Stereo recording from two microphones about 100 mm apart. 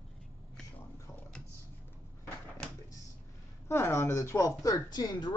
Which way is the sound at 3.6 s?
25° left (ahead or behind).